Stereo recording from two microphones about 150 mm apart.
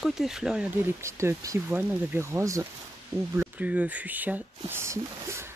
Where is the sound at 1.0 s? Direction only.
20° right (ahead or behind).